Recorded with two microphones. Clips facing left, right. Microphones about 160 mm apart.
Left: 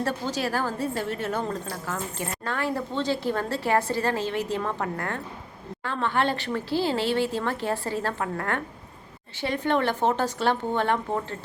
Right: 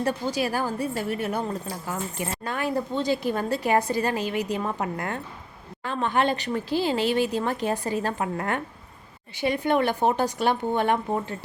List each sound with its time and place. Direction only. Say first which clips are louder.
0.0 s a woman's voice: right 2 dB; 15° right (ahead or behind)